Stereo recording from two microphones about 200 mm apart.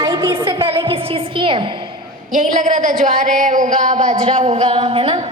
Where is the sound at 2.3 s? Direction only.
40° right (ahead or behind).